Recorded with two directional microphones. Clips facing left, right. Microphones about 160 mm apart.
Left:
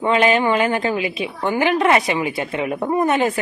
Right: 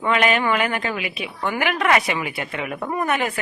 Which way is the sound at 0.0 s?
25° left (ahead or behind).